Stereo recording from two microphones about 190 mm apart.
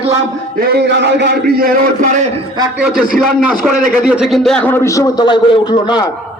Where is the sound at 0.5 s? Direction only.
60° right (ahead or behind); by 2.4 s 40° right (ahead or behind).